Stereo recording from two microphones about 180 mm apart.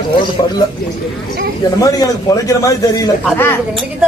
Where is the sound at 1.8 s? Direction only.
20° left (ahead or behind).